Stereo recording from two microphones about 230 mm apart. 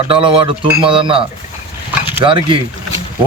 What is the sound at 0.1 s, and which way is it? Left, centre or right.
Speech, right.